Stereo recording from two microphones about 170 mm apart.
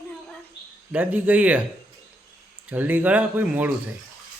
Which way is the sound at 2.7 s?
10° right (ahead or behind).